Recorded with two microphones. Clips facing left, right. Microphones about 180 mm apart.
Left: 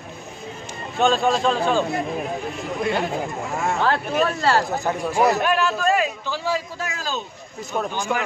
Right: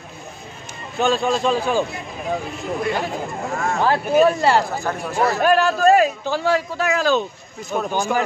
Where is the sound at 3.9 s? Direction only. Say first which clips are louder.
Right 9 dB; 15° right (ahead or behind).